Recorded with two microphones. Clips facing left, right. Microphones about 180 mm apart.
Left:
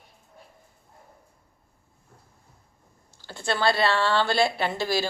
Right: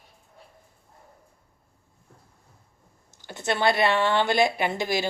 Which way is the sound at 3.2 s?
20° right (ahead or behind).